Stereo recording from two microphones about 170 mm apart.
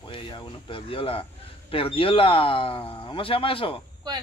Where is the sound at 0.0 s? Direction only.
30° left (ahead or behind).